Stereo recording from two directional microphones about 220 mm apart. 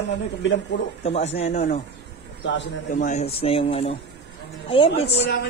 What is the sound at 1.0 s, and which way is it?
Speech, 30° left (ahead or behind).